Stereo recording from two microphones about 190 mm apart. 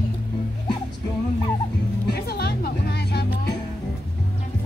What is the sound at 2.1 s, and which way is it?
Music, 55° left (ahead or behind).